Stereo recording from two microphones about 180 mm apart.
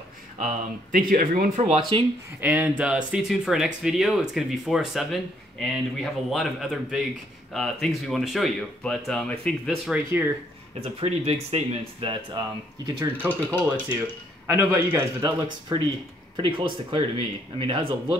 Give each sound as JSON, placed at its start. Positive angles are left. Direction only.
{"t": 0.9, "sound": "speech", "side_deg": -50}
{"t": 1.6, "sound": "speech", "side_deg": -30}
{"t": 2.4, "sound": "speech", "side_deg": -5}
{"t": 10.8, "sound": "speech", "side_deg": -35}
{"t": 12.8, "sound": "speech", "side_deg": -15}